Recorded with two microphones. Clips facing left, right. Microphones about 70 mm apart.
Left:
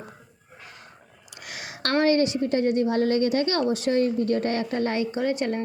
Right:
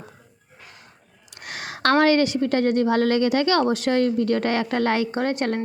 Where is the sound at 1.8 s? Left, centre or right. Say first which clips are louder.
Right 3 dB; right.